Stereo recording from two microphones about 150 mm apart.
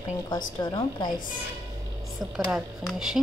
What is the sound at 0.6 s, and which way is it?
Speech, 30° left (ahead or behind).